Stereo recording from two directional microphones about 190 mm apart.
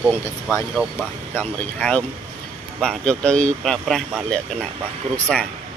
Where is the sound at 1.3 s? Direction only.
10° left (ahead or behind).